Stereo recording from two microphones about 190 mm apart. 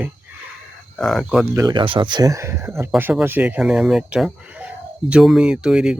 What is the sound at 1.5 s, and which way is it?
Speech, 20° right (ahead or behind).